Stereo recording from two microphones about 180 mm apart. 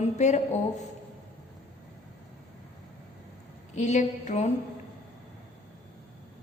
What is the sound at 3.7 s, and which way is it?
Speech, 40° left (ahead or behind).